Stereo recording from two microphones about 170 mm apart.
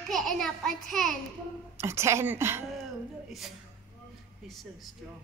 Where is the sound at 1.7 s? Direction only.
15° right (ahead or behind).